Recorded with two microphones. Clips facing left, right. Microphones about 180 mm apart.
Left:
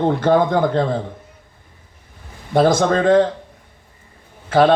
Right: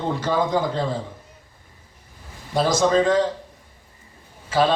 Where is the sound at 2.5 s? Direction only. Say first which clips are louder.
Left 4 dB; 55° left (ahead or behind).